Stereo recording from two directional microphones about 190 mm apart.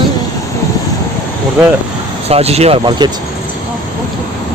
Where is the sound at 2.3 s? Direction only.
35° right (ahead or behind).